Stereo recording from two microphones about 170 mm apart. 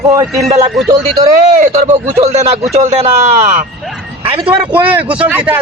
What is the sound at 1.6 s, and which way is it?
Speech, 40° right (ahead or behind).